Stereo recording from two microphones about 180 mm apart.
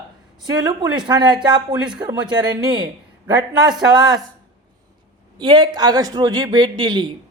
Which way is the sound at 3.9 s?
25° right (ahead or behind).